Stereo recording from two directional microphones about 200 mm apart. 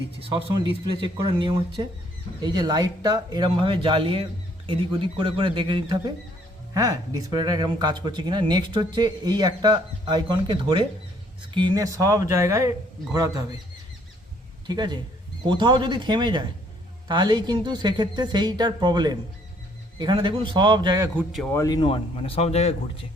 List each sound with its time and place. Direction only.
0.2 s speech: 25° right (ahead or behind)
14.7 s speech: 20° right (ahead or behind)
21.3 s a man's voice: 10° left (ahead or behind); by 22.7 s 30° left (ahead or behind)